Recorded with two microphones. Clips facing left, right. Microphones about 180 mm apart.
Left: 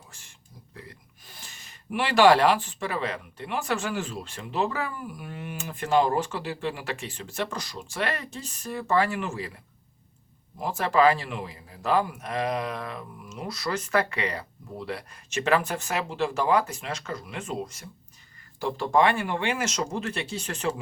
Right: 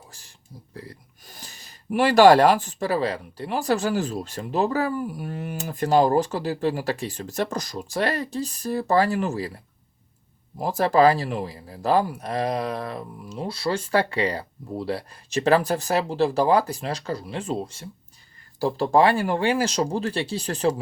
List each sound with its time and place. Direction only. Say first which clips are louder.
0.1 s speech: right 6 dB; 35° right (ahead or behind)
10.6 s speech: right 4 dB; 35° right (ahead or behind)